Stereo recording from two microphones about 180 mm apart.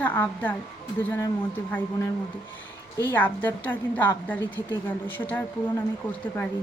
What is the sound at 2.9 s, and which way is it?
Speech, 10° left (ahead or behind).